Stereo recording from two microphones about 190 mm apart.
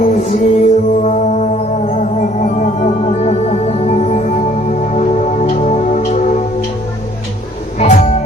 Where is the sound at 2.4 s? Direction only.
40° left (ahead or behind).